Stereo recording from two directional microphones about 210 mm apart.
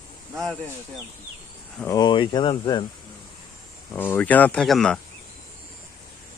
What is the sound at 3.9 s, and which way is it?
Speech, 10° left (ahead or behind).